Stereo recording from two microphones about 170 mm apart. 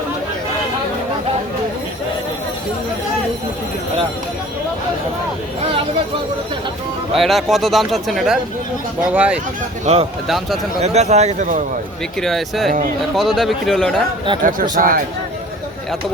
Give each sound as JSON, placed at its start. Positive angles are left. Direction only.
{"t": 7.1, "sound": "speech", "side_deg": 0}
{"t": 9.8, "sound": "speech", "side_deg": -40}
{"t": 10.2, "sound": "speech", "side_deg": 0}
{"t": 10.8, "sound": "speech", "side_deg": -40}
{"t": 12.2, "sound": "speech", "side_deg": 0}
{"t": 14.4, "sound": "speech", "side_deg": -55}